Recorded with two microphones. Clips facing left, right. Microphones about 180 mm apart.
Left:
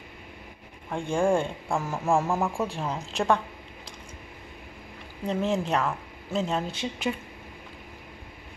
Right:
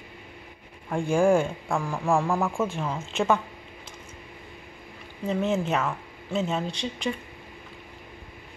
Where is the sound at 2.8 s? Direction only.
Centre (ahead or behind).